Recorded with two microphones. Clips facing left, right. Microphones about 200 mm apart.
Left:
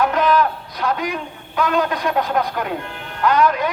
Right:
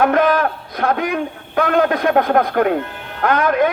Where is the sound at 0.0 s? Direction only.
55° right (ahead or behind).